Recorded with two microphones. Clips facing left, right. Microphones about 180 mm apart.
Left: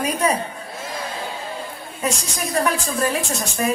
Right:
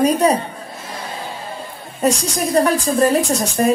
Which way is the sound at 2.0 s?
35° right (ahead or behind).